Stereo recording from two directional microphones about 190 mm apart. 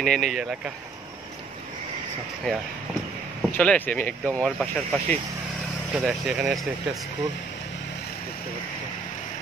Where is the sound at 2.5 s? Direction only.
5° left (ahead or behind).